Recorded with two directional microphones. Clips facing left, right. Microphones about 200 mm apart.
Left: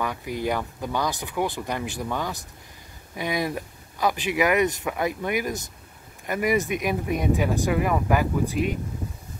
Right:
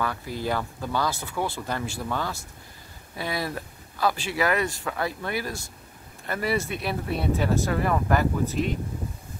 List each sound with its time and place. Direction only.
0.0 s speech: 15° left (ahead or behind)